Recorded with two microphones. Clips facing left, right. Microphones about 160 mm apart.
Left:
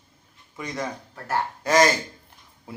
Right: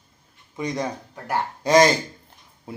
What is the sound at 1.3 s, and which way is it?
Speech, 15° right (ahead or behind).